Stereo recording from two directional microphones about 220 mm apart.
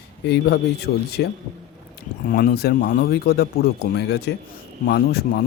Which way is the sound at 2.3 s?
40° left (ahead or behind).